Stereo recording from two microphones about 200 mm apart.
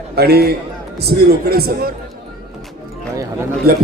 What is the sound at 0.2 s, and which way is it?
Speech, 50° right (ahead or behind).